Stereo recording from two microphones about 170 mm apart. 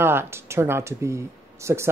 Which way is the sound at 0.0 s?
15° right (ahead or behind).